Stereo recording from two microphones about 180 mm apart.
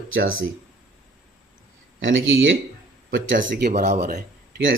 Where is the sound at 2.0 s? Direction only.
90° right.